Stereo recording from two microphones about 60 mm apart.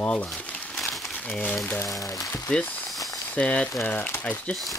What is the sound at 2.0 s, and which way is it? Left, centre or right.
Speech, left.